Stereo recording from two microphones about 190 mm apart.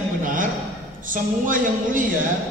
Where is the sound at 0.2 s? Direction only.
45° right (ahead or behind).